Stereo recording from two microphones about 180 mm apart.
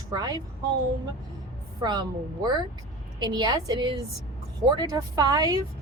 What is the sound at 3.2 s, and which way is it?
Speech, 25° right (ahead or behind).